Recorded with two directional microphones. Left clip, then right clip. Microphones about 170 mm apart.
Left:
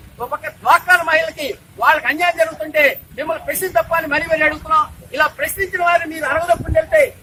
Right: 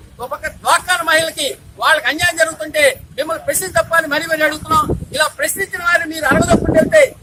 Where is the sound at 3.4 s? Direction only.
Centre (ahead or behind).